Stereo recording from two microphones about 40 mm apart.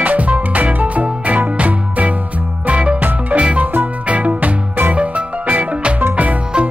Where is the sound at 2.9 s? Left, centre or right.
Right.